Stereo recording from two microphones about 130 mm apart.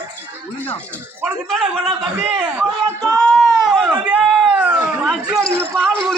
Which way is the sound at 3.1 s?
Centre (ahead or behind).